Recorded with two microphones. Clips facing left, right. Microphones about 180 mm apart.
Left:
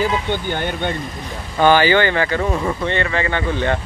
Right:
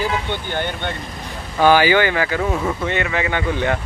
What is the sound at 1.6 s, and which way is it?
Speech, 10° right (ahead or behind).